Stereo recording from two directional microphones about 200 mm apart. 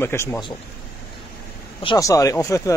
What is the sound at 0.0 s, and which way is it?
Speech, 10° left (ahead or behind).